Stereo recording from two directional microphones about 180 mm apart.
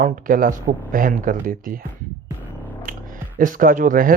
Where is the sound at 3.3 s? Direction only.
50° right (ahead or behind).